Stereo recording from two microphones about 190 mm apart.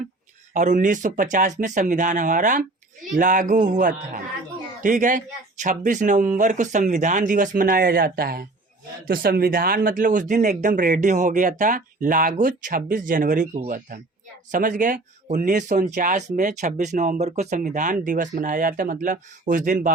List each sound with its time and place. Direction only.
0.5 s speech: 40° right (ahead or behind)